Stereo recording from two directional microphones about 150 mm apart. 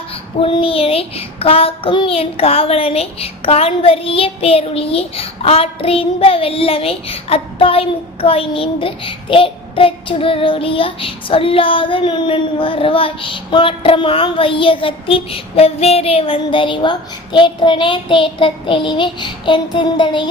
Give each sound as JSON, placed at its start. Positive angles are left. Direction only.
{"t": 0.1, "sound": "child singing", "side_deg": 35}